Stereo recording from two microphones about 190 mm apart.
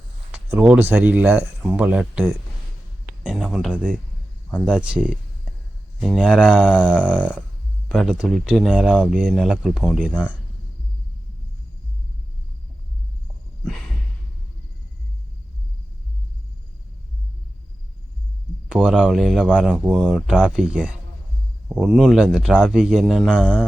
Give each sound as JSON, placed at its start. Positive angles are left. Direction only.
{"t": 0.3, "sound": "speech", "side_deg": -10}
{"t": 6.8, "sound": "speech", "side_deg": -5}
{"t": 13.7, "sound": "a sound", "side_deg": 0}
{"t": 18.7, "sound": "speech", "side_deg": -5}